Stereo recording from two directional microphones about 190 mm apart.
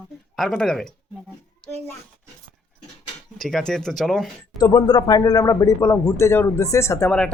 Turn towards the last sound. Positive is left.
turn(degrees=15)  # may be behind; listen again after turning